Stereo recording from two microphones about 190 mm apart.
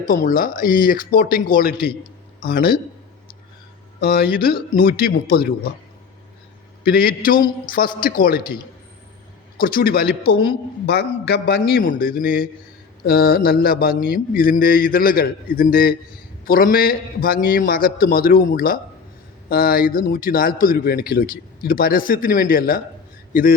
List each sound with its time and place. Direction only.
0.3 s a man's voice: 45° left (ahead or behind)
4.0 s a man's voice: 55° left (ahead or behind)
6.8 s a man's voice: 50° left (ahead or behind)
7.3 s a man's voice: 25° left (ahead or behind)
7.7 s a man's voice: 50° left (ahead or behind)
9.6 s a man's voice: 50° left (ahead or behind)